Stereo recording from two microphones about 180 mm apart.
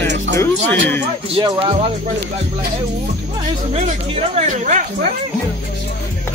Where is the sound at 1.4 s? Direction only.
30° right (ahead or behind).